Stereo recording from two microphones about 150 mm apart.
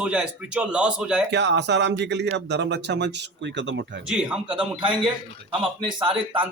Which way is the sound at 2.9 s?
90° right.